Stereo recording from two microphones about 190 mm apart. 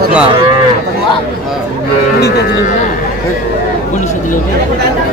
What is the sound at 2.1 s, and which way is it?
Speech, 60° left (ahead or behind).